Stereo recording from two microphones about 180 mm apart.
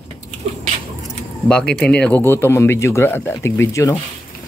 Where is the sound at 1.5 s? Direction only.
5° left (ahead or behind).